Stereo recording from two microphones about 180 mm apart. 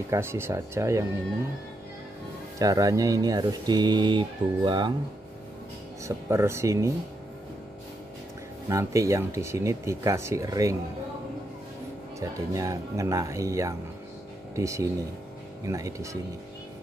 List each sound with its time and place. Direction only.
0.1 s speech: 15° right (ahead or behind)
2.6 s speech: 20° right (ahead or behind)
6.0 s speech: 15° right (ahead or behind)
8.6 s speech: 15° right (ahead or behind)
12.2 s speech: 20° right (ahead or behind)